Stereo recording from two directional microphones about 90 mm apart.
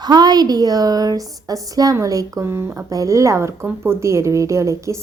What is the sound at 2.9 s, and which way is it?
A woman's voice, 40° right (ahead or behind).